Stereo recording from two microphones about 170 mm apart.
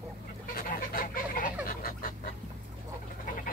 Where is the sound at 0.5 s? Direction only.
55° left (ahead or behind).